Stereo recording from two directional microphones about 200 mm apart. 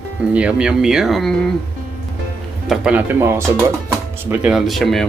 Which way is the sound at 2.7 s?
5° right (ahead or behind).